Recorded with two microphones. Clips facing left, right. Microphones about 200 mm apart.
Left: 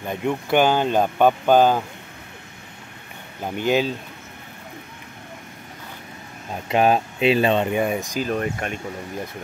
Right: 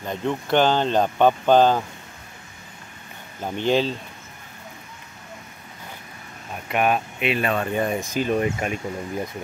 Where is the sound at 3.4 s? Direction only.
10° left (ahead or behind).